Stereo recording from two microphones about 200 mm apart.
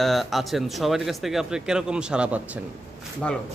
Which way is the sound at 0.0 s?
Centre (ahead or behind).